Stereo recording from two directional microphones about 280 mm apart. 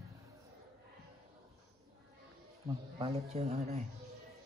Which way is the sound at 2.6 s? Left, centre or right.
Centre.